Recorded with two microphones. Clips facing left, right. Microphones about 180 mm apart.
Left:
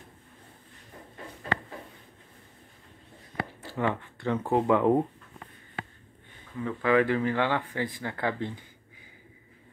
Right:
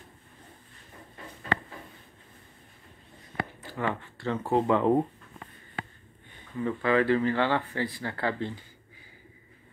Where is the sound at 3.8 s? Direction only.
15° left (ahead or behind).